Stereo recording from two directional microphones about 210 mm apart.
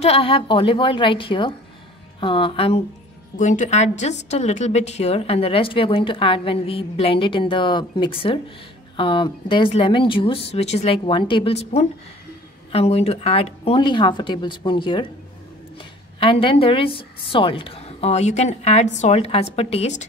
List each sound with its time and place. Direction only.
0.0 s a woman's voice: 25° left (ahead or behind)
16.2 s a woman's voice: 25° left (ahead or behind)